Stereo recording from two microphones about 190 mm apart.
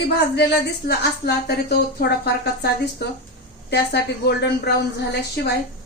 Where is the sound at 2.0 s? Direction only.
60° left (ahead or behind).